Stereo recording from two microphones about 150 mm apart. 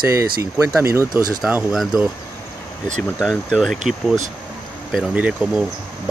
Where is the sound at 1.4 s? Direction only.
5° right (ahead or behind).